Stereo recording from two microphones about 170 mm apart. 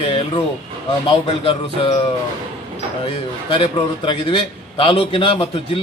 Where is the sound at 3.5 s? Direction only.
30° left (ahead or behind).